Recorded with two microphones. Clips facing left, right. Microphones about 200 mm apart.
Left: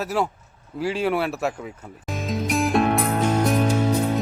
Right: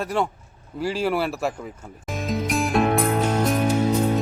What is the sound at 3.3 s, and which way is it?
Music, 10° right (ahead or behind).